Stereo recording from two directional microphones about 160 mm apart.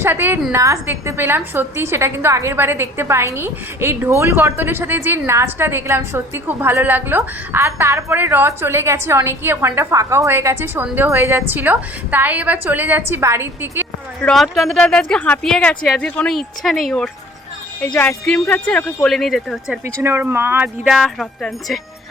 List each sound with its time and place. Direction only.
0.0 s a woman's voice: 15° right (ahead or behind)
14.2 s speech: 5° left (ahead or behind)
19.8 s a woman's voice: 15° right (ahead or behind)
20.9 s speech: centre (ahead or behind)